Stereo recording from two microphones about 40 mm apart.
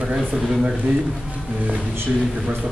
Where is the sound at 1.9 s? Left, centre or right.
Right.